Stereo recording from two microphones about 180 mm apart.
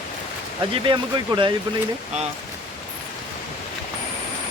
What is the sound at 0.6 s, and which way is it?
Speech, 25° right (ahead or behind).